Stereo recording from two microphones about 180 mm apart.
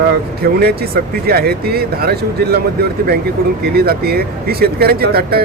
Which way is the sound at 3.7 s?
60° right (ahead or behind).